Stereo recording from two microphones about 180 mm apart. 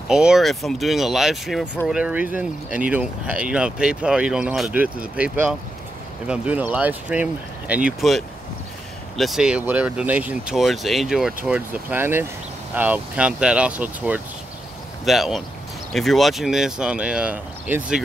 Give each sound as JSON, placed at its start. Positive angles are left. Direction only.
{"t": 0.1, "sound": "speech", "side_deg": -5}